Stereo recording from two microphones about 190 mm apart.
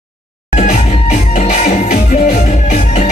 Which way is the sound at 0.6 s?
40° left (ahead or behind).